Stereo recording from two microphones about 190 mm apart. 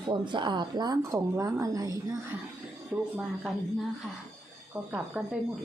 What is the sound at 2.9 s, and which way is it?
Speech, 5° right (ahead or behind).